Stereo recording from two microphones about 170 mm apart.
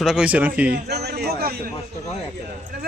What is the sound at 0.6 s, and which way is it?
Speech, 70° right (ahead or behind).